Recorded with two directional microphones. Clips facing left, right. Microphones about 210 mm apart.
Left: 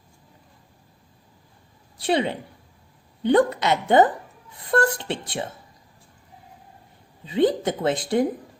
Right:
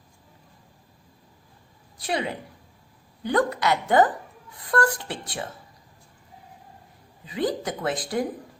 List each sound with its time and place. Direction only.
2.0 s speech: 30° left (ahead or behind)
7.3 s speech: 25° left (ahead or behind)